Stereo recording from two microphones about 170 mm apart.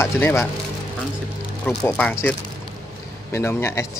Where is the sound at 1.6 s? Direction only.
10° left (ahead or behind).